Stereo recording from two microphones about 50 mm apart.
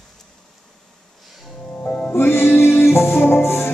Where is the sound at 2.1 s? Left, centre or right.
Left.